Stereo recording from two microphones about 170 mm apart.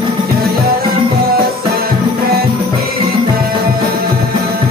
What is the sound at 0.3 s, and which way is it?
Music, 65° right (ahead or behind).